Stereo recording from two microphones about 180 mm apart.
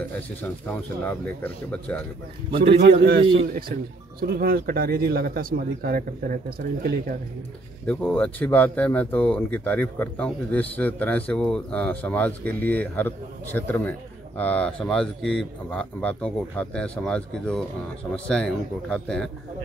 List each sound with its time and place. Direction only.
0.7 s speech: 10° left (ahead or behind)
3.0 s speech: 60° right (ahead or behind)
7.8 s a man's voice: 10° left (ahead or behind)